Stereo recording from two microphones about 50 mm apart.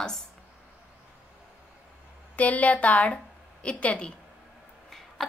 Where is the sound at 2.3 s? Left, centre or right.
Left.